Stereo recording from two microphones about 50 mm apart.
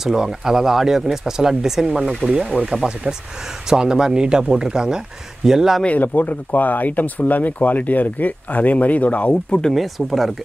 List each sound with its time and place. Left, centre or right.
0.0 s speech: centre
5.9 s speech: left
9.8 s speech: centre